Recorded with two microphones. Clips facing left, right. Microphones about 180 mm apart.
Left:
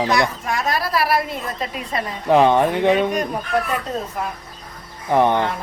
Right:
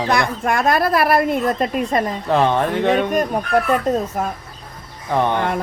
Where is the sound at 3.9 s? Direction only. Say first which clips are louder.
Right 7 dB; 50° right (ahead or behind).